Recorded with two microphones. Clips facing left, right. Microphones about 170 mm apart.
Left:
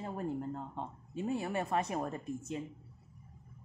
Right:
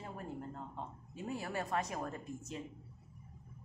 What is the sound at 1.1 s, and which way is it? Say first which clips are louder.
Speech: left 5 dB; 25° left (ahead or behind).